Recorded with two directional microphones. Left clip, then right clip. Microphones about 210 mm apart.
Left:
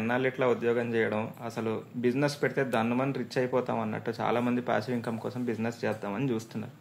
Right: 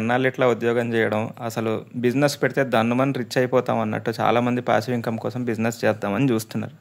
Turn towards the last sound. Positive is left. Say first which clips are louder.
# right 10 dB
turn(degrees=-50)  # may be behind; listen again after turning